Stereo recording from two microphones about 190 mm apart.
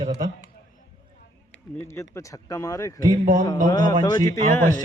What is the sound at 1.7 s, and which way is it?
Speech, 15° left (ahead or behind).